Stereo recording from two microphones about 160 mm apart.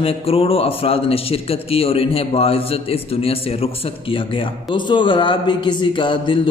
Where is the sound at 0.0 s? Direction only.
35° left (ahead or behind).